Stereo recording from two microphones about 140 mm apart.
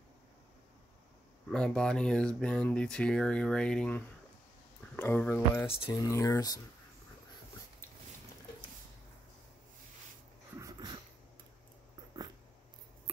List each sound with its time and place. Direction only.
1.5 s speech: 5° left (ahead or behind)
5.7 s speech: 40° left (ahead or behind)
6.0 s speech: 20° left (ahead or behind)
10.6 s a sound: 25° right (ahead or behind)